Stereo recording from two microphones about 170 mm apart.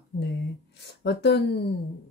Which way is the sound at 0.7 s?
85° left.